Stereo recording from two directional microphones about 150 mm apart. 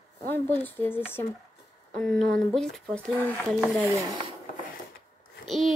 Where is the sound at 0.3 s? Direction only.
15° left (ahead or behind).